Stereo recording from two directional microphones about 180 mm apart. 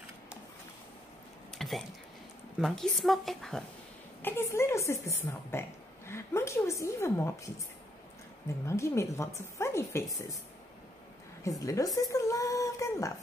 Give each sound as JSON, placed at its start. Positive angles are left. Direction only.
{"t": 1.6, "sound": "a woman's voice", "side_deg": 0}
{"t": 4.2, "sound": "a woman's voice", "side_deg": 10}
{"t": 8.6, "sound": "a woman's voice", "side_deg": 15}
{"t": 11.4, "sound": "a sound", "side_deg": 20}